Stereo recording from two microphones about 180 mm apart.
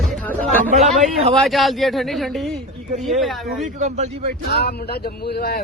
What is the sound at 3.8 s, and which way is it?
Speech, 40° right (ahead or behind).